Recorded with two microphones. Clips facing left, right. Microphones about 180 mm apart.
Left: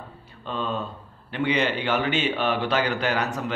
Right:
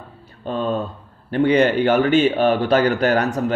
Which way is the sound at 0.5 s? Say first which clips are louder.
Right 7 dB; 45° right (ahead or behind).